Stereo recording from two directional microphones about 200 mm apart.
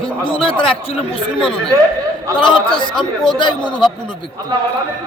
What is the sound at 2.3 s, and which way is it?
Speech, 25° left (ahead or behind).